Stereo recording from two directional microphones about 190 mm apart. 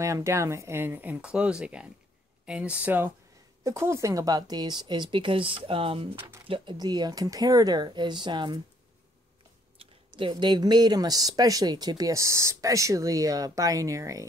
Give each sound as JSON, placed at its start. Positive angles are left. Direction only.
{"t": 0.0, "sound": "speech", "side_deg": -15}
{"t": 9.8, "sound": "speech", "side_deg": -25}